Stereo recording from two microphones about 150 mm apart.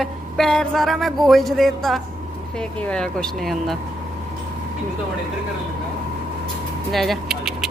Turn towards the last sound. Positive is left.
turn(degrees=0)  # may be behind; listen again after turning